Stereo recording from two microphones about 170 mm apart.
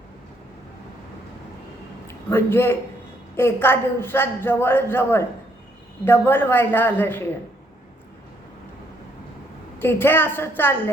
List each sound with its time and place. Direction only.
2.0 s a man's voice: 15° left (ahead or behind)
9.7 s a woman's voice: 10° left (ahead or behind)